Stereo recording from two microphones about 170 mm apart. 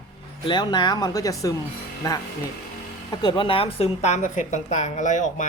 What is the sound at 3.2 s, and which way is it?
A woman's voice, 25° left (ahead or behind).